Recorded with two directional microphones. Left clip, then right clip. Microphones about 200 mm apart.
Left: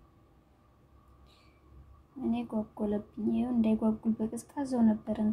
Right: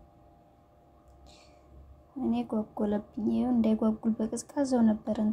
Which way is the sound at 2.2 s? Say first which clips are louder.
Right 3 dB; 15° right (ahead or behind).